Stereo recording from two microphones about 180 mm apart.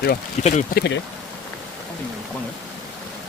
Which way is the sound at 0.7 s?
70° left (ahead or behind).